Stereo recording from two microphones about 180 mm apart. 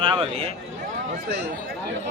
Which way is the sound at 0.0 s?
30° right (ahead or behind).